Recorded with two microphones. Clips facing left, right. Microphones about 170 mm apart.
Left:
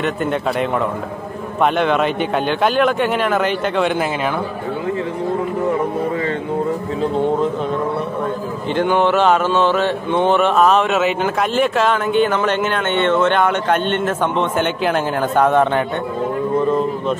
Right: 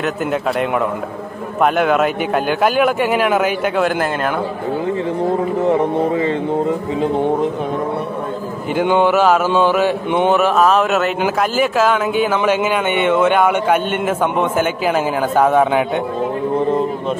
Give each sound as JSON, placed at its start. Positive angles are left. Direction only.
{"t": 0.0, "sound": "a man's voice", "side_deg": 0}
{"t": 1.6, "sound": "mantra", "side_deg": -5}
{"t": 5.7, "sound": "speech", "side_deg": -25}
{"t": 8.7, "sound": "mantra", "side_deg": -10}